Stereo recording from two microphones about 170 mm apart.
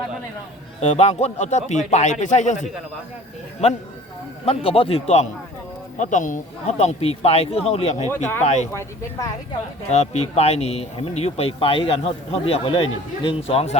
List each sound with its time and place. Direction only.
0.8 s speech: 40° left (ahead or behind)
4.4 s speech: 35° left (ahead or behind)
6.0 s speech: 50° left (ahead or behind)
8.1 s speech: 10° left (ahead or behind)
8.4 s speech: 40° left (ahead or behind)
8.7 s speech: 15° left (ahead or behind)
9.9 s speech: 40° left (ahead or behind)